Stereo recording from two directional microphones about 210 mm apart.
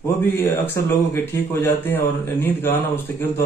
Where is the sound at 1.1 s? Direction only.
10° left (ahead or behind).